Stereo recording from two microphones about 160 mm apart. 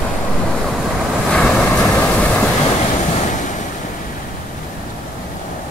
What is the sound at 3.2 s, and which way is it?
Waves, 50° left (ahead or behind).